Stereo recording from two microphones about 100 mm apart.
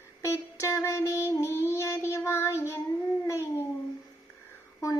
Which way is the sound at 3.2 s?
30° left (ahead or behind).